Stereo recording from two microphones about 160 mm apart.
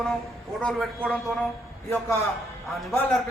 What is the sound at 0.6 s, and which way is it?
Speech, centre (ahead or behind).